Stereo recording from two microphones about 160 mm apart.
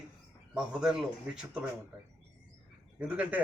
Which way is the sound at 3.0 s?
10° right (ahead or behind).